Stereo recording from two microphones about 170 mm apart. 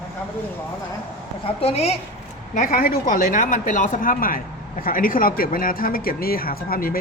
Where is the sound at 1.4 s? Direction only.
35° left (ahead or behind).